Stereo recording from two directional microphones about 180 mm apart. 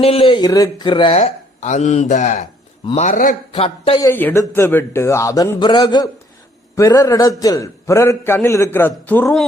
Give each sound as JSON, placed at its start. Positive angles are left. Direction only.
{"t": 0.0, "sound": "speech", "side_deg": 30}
{"t": 3.5, "sound": "speech", "side_deg": 35}
{"t": 3.9, "sound": "a man's voice", "side_deg": 15}